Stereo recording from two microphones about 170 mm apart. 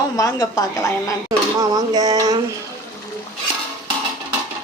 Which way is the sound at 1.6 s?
25° right (ahead or behind).